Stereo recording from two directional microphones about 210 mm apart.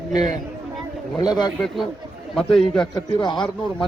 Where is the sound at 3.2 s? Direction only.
20° left (ahead or behind).